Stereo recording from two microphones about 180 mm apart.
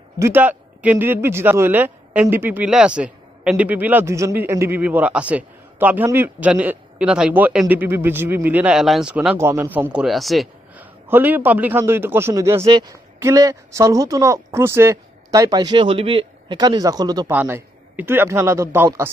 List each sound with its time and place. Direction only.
0.2 s speech: 10° right (ahead or behind)
9.9 s speech: centre (ahead or behind)
11.1 s a woman's voice: 10° right (ahead or behind)
17.3 s speech: 10° right (ahead or behind)